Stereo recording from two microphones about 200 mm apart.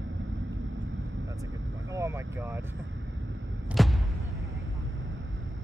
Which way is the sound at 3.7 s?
Centre (ahead or behind).